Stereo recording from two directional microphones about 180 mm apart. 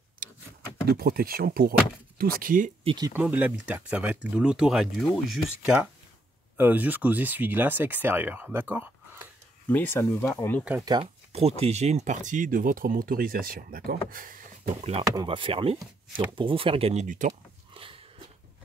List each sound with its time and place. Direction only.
0.8 s speech: 55° right (ahead or behind)
2.8 s speech: 30° right (ahead or behind)
3.1 s speech: 10° right (ahead or behind)
9.7 s speech: 10° left (ahead or behind)
10.6 s speech: 5° right (ahead or behind)
10.9 s speech: 30° right (ahead or behind); by 14.9 s 50° right (ahead or behind)
15.1 s speech: 30° right (ahead or behind); by 17.3 s 45° right (ahead or behind)
17.7 s biting: 30° right (ahead or behind)